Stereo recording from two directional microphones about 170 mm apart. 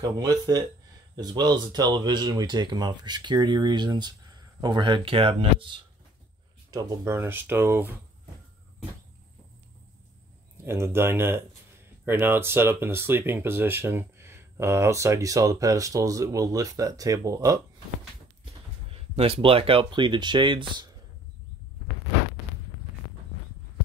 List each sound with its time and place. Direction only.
0.0 s speech: 20° right (ahead or behind)
6.7 s speech: 20° right (ahead or behind)
10.6 s speech: 15° right (ahead or behind)
18.4 s speech: 35° right (ahead or behind)